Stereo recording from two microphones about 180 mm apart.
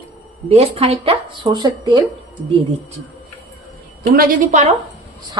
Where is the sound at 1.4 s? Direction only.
20° right (ahead or behind).